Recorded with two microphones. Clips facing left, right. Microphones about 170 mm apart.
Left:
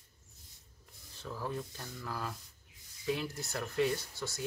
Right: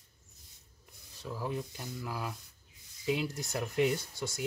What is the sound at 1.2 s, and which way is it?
Speech, 15° right (ahead or behind).